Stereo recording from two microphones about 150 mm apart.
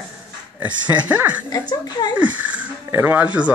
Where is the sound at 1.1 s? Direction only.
10° right (ahead or behind).